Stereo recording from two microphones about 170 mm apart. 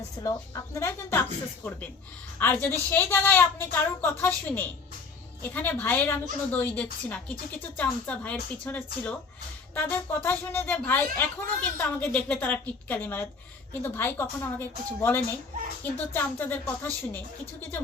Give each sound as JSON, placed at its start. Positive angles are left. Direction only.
{"t": 0.2, "sound": "a woman's voice", "side_deg": 20}
{"t": 2.4, "sound": "a woman's voice", "side_deg": 10}